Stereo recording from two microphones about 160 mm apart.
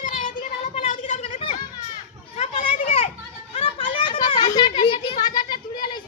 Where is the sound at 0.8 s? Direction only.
45° left (ahead or behind).